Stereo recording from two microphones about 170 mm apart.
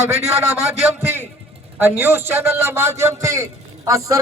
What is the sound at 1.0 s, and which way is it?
A man's voice, 15° right (ahead or behind).